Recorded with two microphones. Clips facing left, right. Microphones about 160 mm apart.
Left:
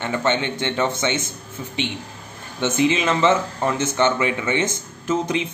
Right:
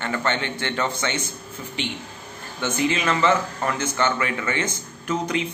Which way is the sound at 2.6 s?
20° left (ahead or behind).